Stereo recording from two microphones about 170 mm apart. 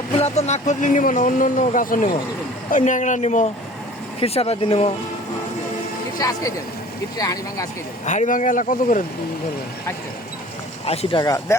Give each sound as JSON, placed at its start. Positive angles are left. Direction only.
{"t": 0.2, "sound": "speech", "side_deg": 40}
{"t": 6.1, "sound": "speech", "side_deg": 20}
{"t": 8.0, "sound": "speech", "side_deg": 45}
{"t": 10.8, "sound": "speech", "side_deg": 35}
{"t": 11.2, "sound": "speech", "side_deg": 20}